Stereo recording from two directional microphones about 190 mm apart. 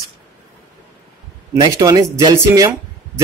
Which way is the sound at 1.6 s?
20° right (ahead or behind).